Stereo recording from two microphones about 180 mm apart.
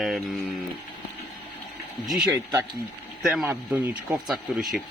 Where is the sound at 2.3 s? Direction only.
15° right (ahead or behind).